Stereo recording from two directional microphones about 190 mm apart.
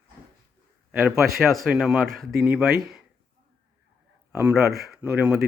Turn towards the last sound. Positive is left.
turn(degrees=-5)  # may be behind; listen again after turning